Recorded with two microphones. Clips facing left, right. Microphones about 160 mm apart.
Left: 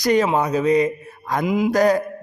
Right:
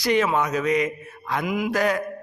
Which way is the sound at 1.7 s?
40° left (ahead or behind).